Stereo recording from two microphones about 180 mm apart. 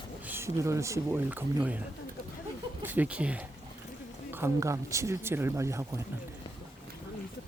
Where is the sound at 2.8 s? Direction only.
10° right (ahead or behind).